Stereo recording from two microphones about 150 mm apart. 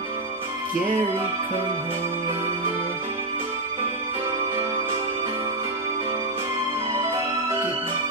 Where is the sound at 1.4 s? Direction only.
35° right (ahead or behind).